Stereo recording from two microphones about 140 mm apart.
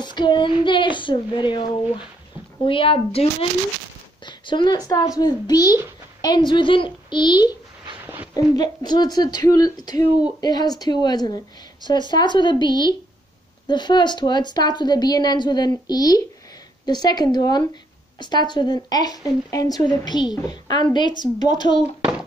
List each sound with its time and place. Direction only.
0.0 s a child's voice: 30° left (ahead or behind)